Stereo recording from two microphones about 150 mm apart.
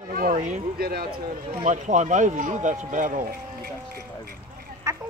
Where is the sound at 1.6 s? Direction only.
55° right (ahead or behind).